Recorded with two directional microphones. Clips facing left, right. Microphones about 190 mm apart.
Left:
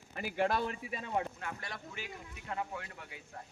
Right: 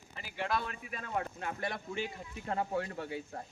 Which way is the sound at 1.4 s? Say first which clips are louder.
Right 6 dB; 25° right (ahead or behind).